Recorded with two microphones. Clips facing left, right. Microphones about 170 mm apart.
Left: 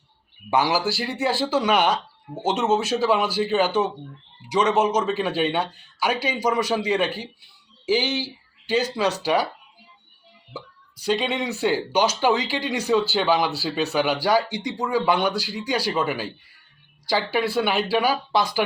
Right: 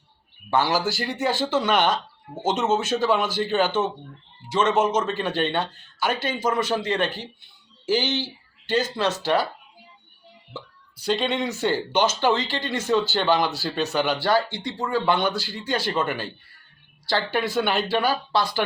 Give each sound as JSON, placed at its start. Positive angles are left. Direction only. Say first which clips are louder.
{"t": 0.5, "sound": "speech", "louder": "left 1 dB", "side_deg": 10}
{"t": 4.7, "sound": "speech", "louder": "left 1 dB", "side_deg": 10}
{"t": 11.0, "sound": "speech", "louder": "even", "side_deg": 10}